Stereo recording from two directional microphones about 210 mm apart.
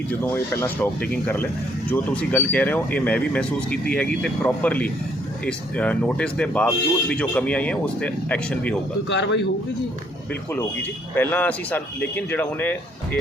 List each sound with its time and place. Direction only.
0.1 s speech: 10° left (ahead or behind)
9.0 s a man's voice: 55° left (ahead or behind)
11.1 s speech: 10° left (ahead or behind)